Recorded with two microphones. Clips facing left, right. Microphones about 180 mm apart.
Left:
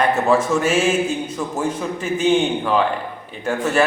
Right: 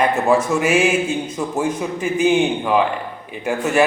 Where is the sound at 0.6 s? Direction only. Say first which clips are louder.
Right 1 dB; 10° right (ahead or behind).